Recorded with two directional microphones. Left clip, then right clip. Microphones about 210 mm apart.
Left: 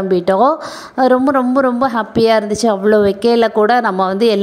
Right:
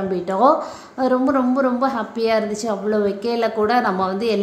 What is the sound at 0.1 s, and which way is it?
A woman's voice, 40° left (ahead or behind).